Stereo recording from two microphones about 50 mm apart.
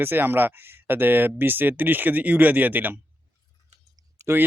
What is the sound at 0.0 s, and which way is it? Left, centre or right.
Speech, right.